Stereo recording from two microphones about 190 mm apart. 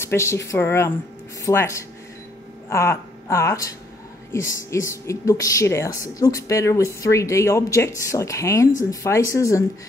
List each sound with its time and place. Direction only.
0.0 s speech: 15° left (ahead or behind)